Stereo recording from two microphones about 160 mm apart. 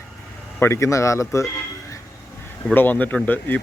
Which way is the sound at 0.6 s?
15° left (ahead or behind).